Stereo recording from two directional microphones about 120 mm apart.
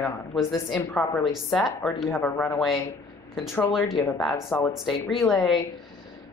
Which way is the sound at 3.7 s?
Centre (ahead or behind).